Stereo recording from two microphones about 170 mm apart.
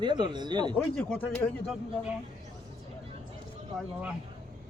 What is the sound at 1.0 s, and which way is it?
Speech, 5° left (ahead or behind).